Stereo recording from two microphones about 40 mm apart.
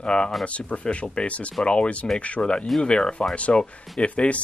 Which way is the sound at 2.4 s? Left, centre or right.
Left.